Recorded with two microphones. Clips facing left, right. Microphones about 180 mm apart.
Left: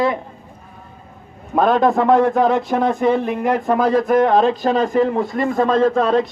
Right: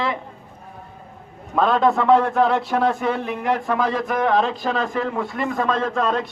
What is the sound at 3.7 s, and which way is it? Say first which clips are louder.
A man's voice: left 7 dB; 45° left (ahead or behind).